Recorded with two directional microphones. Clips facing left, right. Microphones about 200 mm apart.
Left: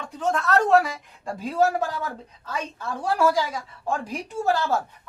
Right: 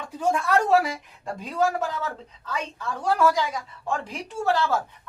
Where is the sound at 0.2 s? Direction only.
10° right (ahead or behind).